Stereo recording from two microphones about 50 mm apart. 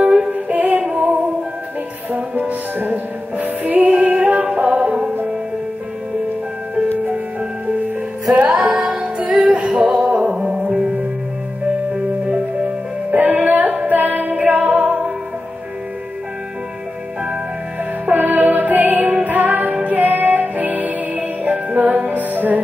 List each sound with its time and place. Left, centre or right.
0.3 s music: right
2.4 s music: right
8.7 s music: centre
9.0 s music: right
13.1 s music: right
18.1 s music: right